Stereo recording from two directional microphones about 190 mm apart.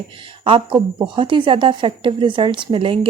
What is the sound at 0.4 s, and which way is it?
A woman's voice, 25° right (ahead or behind).